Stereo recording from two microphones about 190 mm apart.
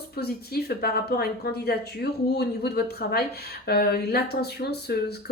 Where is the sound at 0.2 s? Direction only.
55° left (ahead or behind).